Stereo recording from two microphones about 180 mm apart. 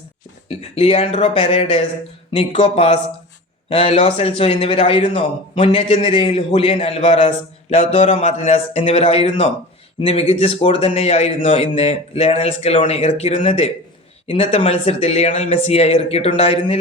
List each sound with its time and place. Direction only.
0.4 s a man's voice: 35° left (ahead or behind)